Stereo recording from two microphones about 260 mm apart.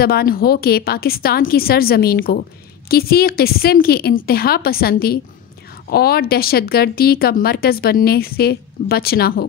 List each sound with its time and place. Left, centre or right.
0.0 s speech: left